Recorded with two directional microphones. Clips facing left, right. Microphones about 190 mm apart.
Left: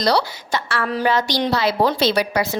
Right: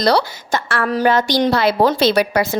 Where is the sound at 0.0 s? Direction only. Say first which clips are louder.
Right 3 dB; 50° right (ahead or behind).